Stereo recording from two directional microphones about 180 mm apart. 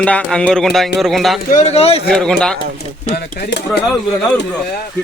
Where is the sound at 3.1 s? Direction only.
65° left (ahead or behind).